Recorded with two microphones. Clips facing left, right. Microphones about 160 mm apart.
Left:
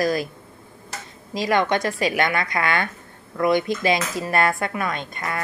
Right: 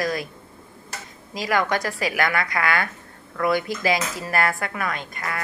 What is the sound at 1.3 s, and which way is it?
A woman's voice, 25° left (ahead or behind).